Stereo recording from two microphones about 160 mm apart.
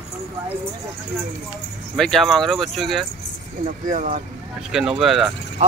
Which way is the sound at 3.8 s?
55° right (ahead or behind).